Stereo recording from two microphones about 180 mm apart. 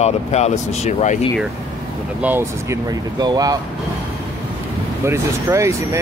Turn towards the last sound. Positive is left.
turn(degrees=-15)  # may be behind; listen again after turning